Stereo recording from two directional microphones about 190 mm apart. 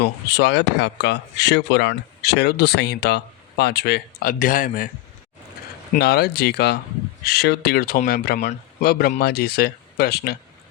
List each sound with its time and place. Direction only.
0.0 s speech: 60° left (ahead or behind); by 4.9 s 45° left (ahead or behind)
5.9 s speech: 55° left (ahead or behind)